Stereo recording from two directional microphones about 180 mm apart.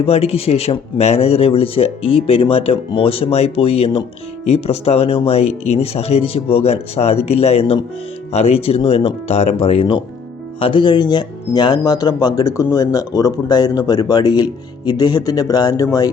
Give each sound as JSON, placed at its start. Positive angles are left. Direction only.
{"t": 0.0, "sound": "speech", "side_deg": 35}